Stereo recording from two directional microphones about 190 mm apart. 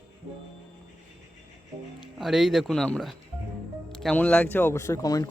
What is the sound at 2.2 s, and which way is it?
Speech, centre (ahead or behind).